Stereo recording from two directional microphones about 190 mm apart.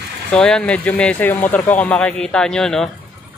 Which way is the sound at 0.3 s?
5° left (ahead or behind).